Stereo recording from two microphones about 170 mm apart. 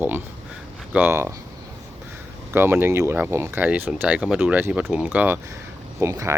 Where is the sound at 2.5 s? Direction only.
15° right (ahead or behind).